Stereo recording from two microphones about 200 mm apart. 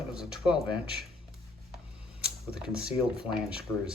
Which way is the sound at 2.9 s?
5° right (ahead or behind).